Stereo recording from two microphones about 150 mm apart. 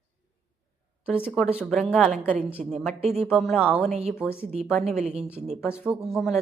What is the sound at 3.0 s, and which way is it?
Speech, 45° right (ahead or behind).